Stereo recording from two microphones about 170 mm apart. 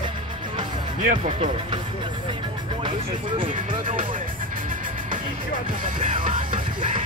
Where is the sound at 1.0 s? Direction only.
40° right (ahead or behind).